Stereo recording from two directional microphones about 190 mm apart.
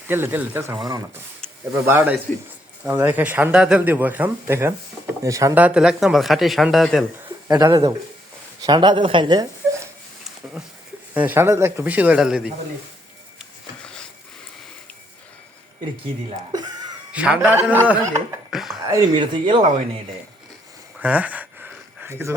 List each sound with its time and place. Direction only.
0.1 s speech: 10° right (ahead or behind)
7.4 s speech: 20° right (ahead or behind)
11.1 s speech: 10° right (ahead or behind)
13.4 s a sound: 5° left (ahead or behind)
17.1 s speech: 5° right (ahead or behind)
19.2 s speech: 25° right (ahead or behind)
21.0 s a sound: 10° right (ahead or behind)